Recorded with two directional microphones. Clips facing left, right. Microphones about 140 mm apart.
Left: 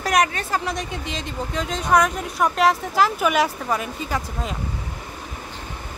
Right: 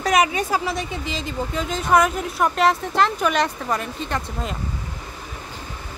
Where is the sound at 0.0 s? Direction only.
Centre (ahead or behind).